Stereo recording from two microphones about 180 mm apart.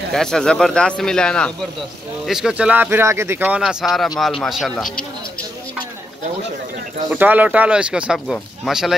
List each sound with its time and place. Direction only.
0.1 s speech: centre (ahead or behind)
7.1 s speech: 10° right (ahead or behind)